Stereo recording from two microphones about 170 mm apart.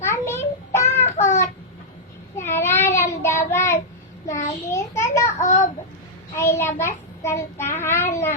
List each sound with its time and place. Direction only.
0.0 s child singing: 15° left (ahead or behind)
0.9 s child singing: 40° left (ahead or behind)
2.3 s child singing: 15° left (ahead or behind)